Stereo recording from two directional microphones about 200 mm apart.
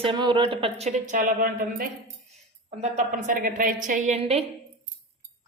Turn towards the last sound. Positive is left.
turn(degrees=-30)  # may be behind; listen again after turning